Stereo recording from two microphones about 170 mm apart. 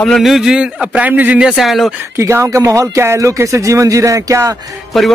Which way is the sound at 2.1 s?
15° right (ahead or behind).